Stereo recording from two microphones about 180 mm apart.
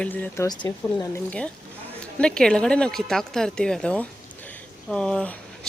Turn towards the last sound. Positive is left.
turn(degrees=5)  # may be behind; listen again after turning